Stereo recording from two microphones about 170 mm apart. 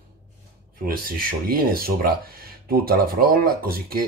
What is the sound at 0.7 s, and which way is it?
Speech, 60° right (ahead or behind).